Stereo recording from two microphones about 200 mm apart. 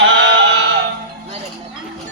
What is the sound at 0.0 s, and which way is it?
Synthetic singing, 65° right (ahead or behind).